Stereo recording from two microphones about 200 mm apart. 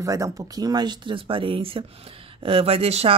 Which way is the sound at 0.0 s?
15° right (ahead or behind).